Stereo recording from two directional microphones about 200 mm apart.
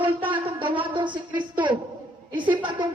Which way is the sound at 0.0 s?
25° right (ahead or behind).